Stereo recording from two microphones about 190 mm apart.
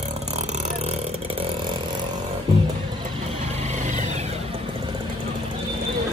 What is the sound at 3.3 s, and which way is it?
Vehicle, 35° right (ahead or behind).